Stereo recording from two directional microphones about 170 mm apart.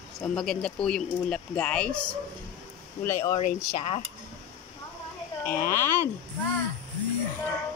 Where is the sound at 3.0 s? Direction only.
15° left (ahead or behind).